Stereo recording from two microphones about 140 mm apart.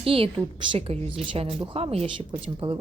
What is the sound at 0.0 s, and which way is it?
Speech, 40° right (ahead or behind).